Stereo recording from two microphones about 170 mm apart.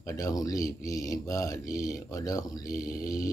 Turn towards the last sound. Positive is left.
turn(degrees=20)  # may be behind; listen again after turning